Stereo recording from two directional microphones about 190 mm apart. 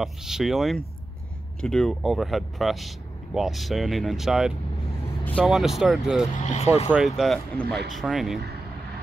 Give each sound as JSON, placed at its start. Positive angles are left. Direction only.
{"t": 0.0, "sound": "speech", "side_deg": 0}
{"t": 6.4, "sound": "speech", "side_deg": 35}
{"t": 7.2, "sound": "speech", "side_deg": 0}
{"t": 7.6, "sound": "speech", "side_deg": -60}
{"t": 7.9, "sound": "speech", "side_deg": 0}